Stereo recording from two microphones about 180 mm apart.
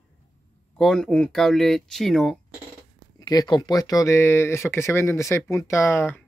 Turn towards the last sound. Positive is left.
turn(degrees=10)  # may be behind; listen again after turning